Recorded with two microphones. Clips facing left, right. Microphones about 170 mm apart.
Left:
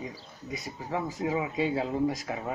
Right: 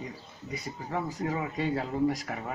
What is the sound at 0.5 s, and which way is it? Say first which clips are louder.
Speech: left 1 dB; 5° left (ahead or behind).